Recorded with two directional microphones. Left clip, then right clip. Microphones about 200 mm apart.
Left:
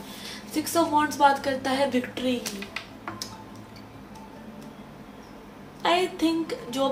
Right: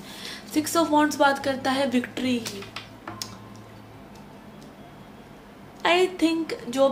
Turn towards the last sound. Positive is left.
turn(degrees=-35)  # may be behind; listen again after turning